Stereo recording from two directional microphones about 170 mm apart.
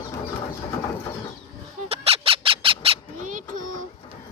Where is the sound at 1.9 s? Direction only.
35° right (ahead or behind).